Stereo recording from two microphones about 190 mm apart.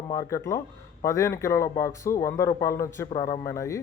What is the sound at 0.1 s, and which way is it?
A man's voice, 15° left (ahead or behind).